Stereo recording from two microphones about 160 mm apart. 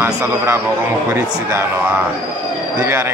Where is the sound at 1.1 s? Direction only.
15° right (ahead or behind).